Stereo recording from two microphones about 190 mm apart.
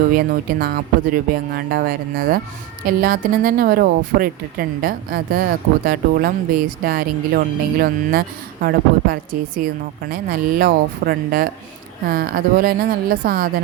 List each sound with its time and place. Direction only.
0.1 s speech: 50° right (ahead or behind)
9.6 s speech: 45° right (ahead or behind)